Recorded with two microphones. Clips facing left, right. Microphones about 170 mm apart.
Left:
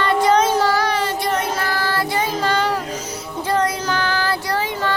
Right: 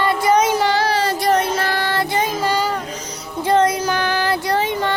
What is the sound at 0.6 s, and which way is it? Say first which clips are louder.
Child singing: right 1 dB; 25° right (ahead or behind).